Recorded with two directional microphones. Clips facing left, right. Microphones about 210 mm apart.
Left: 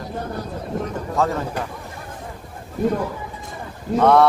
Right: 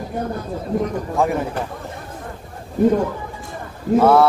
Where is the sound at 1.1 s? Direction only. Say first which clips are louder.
Right 1 dB; 15° right (ahead or behind).